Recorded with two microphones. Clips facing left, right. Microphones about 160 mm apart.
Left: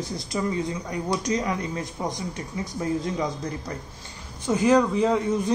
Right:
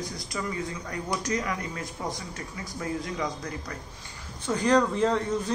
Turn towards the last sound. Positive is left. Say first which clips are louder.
# left 3 dB
turn(degrees=5)  # may be behind; listen again after turning